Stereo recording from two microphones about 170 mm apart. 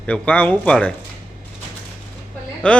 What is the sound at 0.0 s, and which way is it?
Speech, 5° left (ahead or behind).